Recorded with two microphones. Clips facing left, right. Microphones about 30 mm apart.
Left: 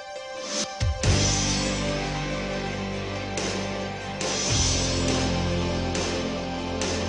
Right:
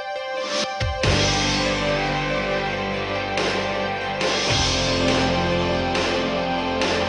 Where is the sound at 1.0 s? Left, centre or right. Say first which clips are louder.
Right 5 dB; right.